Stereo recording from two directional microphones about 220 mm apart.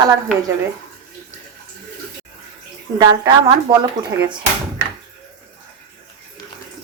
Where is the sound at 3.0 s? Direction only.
20° right (ahead or behind).